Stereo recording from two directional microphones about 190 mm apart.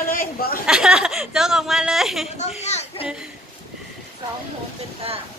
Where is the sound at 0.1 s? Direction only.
50° left (ahead or behind).